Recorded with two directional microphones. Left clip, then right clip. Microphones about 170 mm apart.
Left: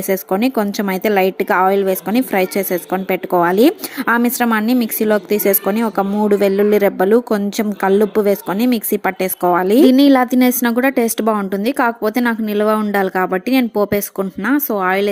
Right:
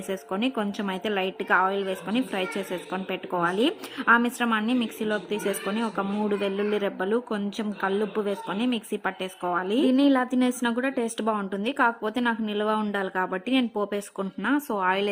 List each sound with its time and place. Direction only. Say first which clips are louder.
0.1 s a woman's voice: left 12 dB; 35° left (ahead or behind)